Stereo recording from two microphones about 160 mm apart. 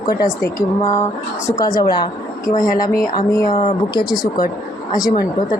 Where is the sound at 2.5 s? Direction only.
55° left (ahead or behind).